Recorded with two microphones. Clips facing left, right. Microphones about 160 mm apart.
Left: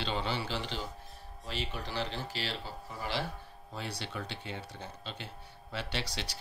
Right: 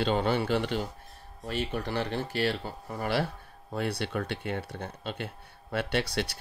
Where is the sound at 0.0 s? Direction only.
50° right (ahead or behind).